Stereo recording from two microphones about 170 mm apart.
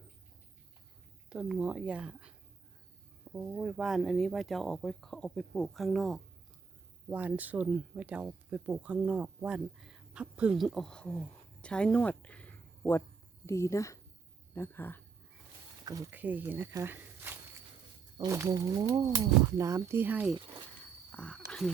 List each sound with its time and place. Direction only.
1.3 s speech: 5° right (ahead or behind)
3.3 s speech: 5° right (ahead or behind); by 15.0 s 10° left (ahead or behind)
15.8 s speech: 20° right (ahead or behind)
21.1 s a sound: 5° left (ahead or behind)